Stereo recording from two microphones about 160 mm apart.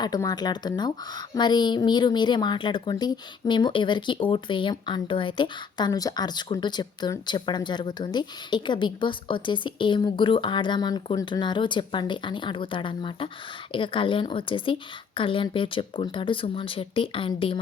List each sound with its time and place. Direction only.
0.0 s a woman's voice: 25° left (ahead or behind)